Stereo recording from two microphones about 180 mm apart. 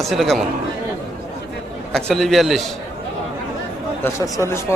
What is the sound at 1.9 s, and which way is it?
Speech, centre (ahead or behind).